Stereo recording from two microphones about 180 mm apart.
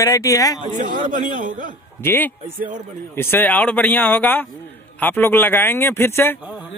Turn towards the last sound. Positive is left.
turn(degrees=15)  # may be behind; listen again after turning